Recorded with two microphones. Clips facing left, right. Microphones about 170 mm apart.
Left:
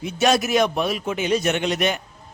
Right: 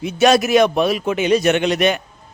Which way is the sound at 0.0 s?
75° right (ahead or behind).